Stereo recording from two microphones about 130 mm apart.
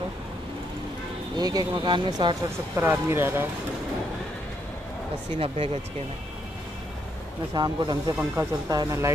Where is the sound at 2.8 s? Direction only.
20° right (ahead or behind).